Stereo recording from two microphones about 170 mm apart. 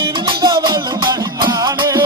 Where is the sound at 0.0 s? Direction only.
25° right (ahead or behind).